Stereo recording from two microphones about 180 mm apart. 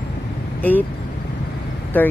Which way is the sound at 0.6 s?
10° left (ahead or behind).